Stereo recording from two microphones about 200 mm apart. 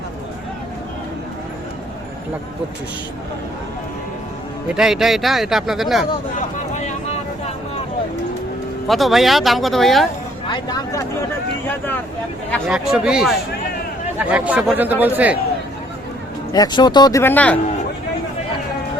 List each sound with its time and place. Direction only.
4.7 s speech: 5° right (ahead or behind)
6.7 s vehicle: 35° left (ahead or behind)
8.9 s speech: centre (ahead or behind)
10.5 s speech: 20° left (ahead or behind)
12.5 s speech: 5° left (ahead or behind)
16.5 s speech: 20° left (ahead or behind)